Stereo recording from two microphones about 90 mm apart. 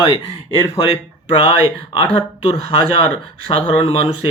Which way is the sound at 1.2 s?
80° left.